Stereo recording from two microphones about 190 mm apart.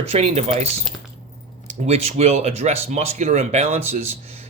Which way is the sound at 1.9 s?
35° right (ahead or behind).